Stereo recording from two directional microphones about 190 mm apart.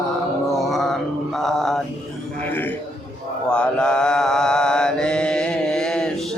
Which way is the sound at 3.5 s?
5° left (ahead or behind).